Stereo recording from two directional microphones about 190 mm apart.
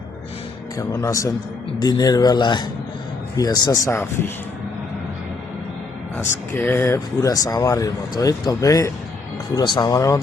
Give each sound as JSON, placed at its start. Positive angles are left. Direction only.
{"t": 0.8, "sound": "speech", "side_deg": 15}
{"t": 6.1, "sound": "speech", "side_deg": 10}